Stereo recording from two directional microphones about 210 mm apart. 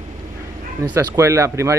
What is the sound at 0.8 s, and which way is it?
Speech, 15° right (ahead or behind).